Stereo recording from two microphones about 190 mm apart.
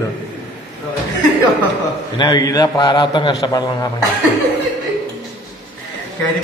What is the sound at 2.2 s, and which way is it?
A man's voice, 20° left (ahead or behind).